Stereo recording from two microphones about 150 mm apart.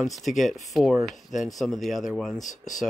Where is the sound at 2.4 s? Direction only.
55° left (ahead or behind).